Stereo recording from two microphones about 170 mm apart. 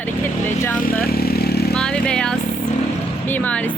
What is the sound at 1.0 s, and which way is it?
Vehicle, 65° left (ahead or behind).